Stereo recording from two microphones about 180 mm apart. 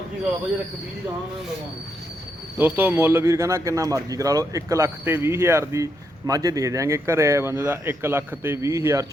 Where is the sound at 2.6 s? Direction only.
10° right (ahead or behind).